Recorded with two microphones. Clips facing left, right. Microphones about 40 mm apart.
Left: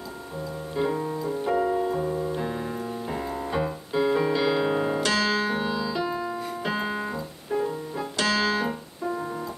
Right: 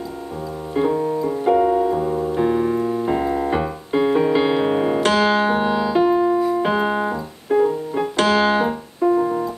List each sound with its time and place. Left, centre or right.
0.8 s piano: right
1.2 s music: right
1.9 s music: centre
2.1 s piano: right
6.6 s keyboard: right
7.9 s piano: right
9.1 s music: right